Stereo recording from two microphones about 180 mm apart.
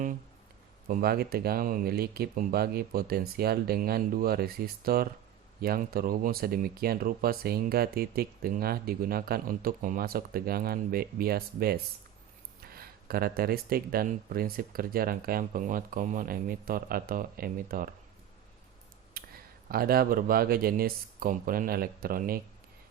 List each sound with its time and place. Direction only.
0.9 s speech: 55° right (ahead or behind)
19.2 s a sound: 55° right (ahead or behind)
19.6 s speech: 55° right (ahead or behind)